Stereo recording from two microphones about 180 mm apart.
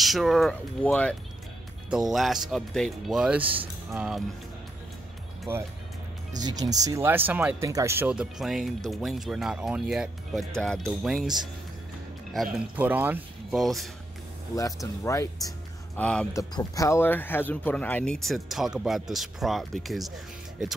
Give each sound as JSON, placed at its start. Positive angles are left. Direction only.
{"t": 0.0, "sound": "speech", "side_deg": 0}
{"t": 6.3, "sound": "speech", "side_deg": -20}
{"t": 12.5, "sound": "speech", "side_deg": -10}
{"t": 14.5, "sound": "speech", "side_deg": 20}
{"t": 16.0, "sound": "speech", "side_deg": 5}
{"t": 16.3, "sound": "speech", "side_deg": 20}